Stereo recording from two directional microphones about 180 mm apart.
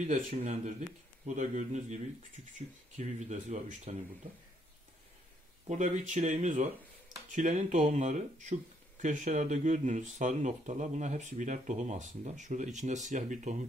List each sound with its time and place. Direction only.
0.0 s speech: 45° right (ahead or behind)
3.0 s speech: 40° right (ahead or behind)
5.7 s speech: 45° right (ahead or behind)